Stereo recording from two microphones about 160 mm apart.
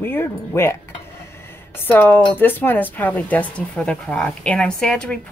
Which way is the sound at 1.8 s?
10° left (ahead or behind).